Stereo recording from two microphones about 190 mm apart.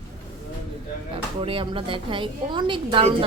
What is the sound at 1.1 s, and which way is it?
A woman's voice, 30° right (ahead or behind).